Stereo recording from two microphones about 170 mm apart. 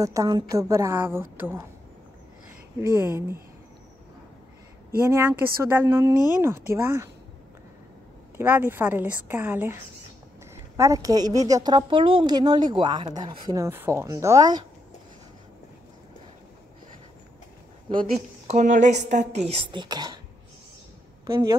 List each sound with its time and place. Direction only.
0.0 s speech: 20° right (ahead or behind)
3.0 s speech: 15° right (ahead or behind)
5.0 s speech: 15° right (ahead or behind)
8.4 s a woman's voice: 10° right (ahead or behind)
18.5 s a woman's voice: 45° right (ahead or behind); by 20.2 s 25° right (ahead or behind)